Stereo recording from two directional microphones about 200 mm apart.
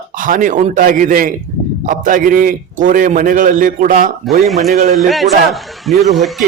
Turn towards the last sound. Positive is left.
turn(degrees=0)  # may be behind; listen again after turning